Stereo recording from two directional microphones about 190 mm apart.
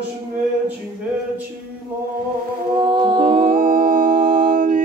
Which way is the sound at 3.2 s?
50° right (ahead or behind).